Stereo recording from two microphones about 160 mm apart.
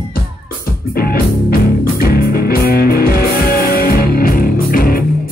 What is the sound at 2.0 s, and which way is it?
Music, 70° left (ahead or behind).